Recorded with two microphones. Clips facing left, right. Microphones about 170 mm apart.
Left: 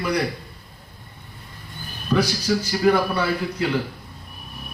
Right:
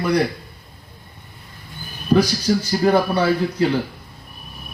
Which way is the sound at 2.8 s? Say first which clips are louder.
Right 3 dB; 35° right (ahead or behind).